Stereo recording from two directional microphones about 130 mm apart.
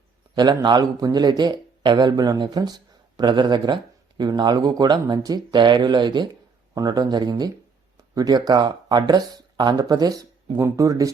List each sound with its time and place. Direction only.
0.3 s speech: 35° right (ahead or behind)